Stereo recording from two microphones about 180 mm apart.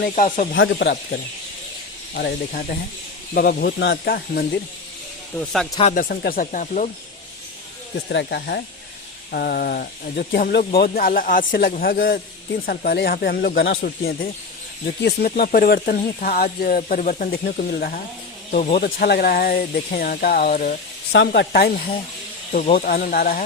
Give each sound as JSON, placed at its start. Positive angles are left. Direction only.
{"t": 0.0, "sound": "speech", "side_deg": 50}
{"t": 0.5, "sound": "speech", "side_deg": 85}
{"t": 3.3, "sound": "speech", "side_deg": 65}
{"t": 5.4, "sound": "speech", "side_deg": 5}
{"t": 5.8, "sound": "speech", "side_deg": 50}
{"t": 8.1, "sound": "speech", "side_deg": 70}
{"t": 18.5, "sound": "speech", "side_deg": 40}
{"t": 18.8, "sound": "speech", "side_deg": 60}
{"t": 21.1, "sound": "speech", "side_deg": 75}
{"t": 22.7, "sound": "speech", "side_deg": 60}